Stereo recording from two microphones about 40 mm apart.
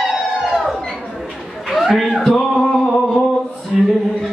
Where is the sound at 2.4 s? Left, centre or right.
Centre.